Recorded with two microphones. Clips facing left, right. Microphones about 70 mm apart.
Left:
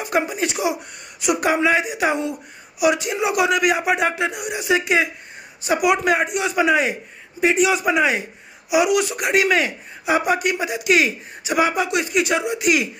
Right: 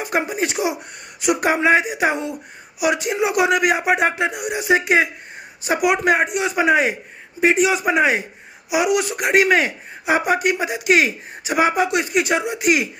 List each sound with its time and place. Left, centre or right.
0.0 s a man's voice: right